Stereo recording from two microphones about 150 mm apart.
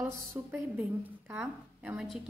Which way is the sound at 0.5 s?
10° right (ahead or behind).